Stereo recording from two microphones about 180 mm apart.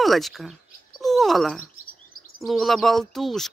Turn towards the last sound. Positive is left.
turn(degrees=0)  # may be behind; listen again after turning